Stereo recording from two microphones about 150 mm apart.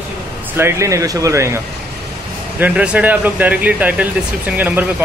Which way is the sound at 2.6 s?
10° right (ahead or behind).